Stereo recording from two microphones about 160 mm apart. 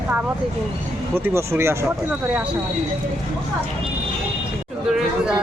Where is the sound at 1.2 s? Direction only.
15° right (ahead or behind).